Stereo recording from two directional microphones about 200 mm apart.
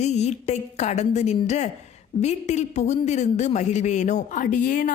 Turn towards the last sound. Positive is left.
turn(degrees=40)  # may be behind; listen again after turning